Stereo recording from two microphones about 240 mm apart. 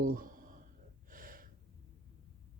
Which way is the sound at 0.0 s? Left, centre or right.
Right.